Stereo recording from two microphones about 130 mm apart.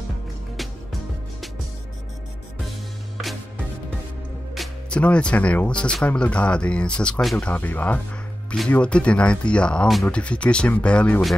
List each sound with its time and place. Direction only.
4.6 s speech: 10° left (ahead or behind)